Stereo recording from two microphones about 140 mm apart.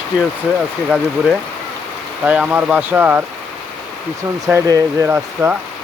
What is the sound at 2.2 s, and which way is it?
Speech, 10° right (ahead or behind).